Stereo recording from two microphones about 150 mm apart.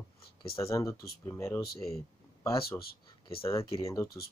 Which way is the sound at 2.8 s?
90° left.